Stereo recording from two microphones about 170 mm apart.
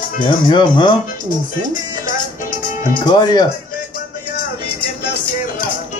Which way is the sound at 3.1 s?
25° left (ahead or behind).